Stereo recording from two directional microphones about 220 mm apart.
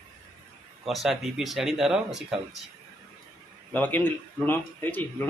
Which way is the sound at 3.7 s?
10° left (ahead or behind).